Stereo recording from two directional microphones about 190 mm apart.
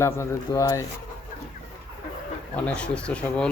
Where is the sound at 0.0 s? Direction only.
15° left (ahead or behind).